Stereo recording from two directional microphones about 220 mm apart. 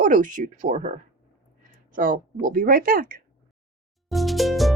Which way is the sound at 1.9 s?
40° right (ahead or behind).